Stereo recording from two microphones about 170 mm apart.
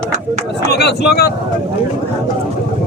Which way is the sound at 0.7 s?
70° left (ahead or behind).